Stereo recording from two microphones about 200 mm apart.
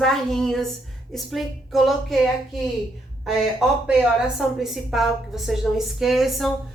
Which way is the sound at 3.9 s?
5° right (ahead or behind).